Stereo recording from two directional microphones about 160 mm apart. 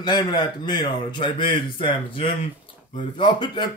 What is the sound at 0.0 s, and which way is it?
Speech, 25° left (ahead or behind).